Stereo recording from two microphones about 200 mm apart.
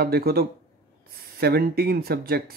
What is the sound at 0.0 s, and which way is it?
Speech, 50° right (ahead or behind).